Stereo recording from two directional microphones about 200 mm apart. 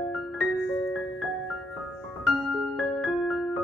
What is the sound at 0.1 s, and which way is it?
Music, centre (ahead or behind).